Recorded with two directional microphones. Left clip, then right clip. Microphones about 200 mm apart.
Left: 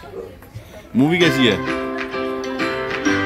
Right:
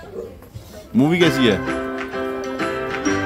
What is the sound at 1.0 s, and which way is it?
Speech, centre (ahead or behind).